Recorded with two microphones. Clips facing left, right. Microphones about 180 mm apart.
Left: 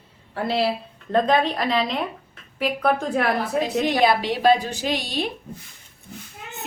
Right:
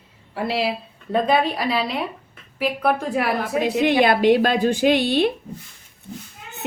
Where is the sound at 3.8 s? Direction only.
60° right (ahead or behind).